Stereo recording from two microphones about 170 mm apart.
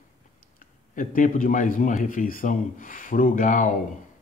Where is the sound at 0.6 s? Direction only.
50° left (ahead or behind).